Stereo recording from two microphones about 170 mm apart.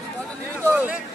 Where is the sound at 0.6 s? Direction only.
10° right (ahead or behind).